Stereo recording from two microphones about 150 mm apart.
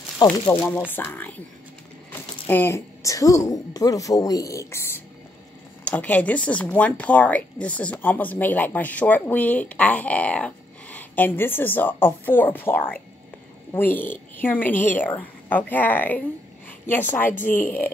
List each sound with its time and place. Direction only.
0.5 s speech: 10° left (ahead or behind)